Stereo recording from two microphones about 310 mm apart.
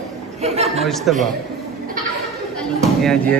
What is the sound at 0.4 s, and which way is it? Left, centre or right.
Speech, centre.